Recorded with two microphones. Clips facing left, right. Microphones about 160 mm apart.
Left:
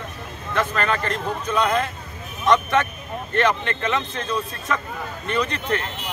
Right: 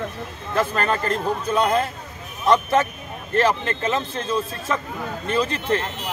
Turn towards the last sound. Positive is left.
turn(degrees=-30)  # may be behind; listen again after turning